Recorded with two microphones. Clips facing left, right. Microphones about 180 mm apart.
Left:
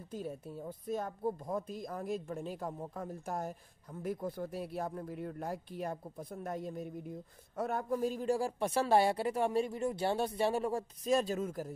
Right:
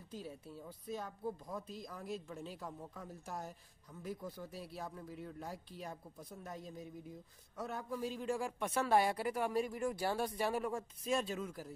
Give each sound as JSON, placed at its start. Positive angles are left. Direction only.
{"t": 0.1, "sound": "speech", "side_deg": 50}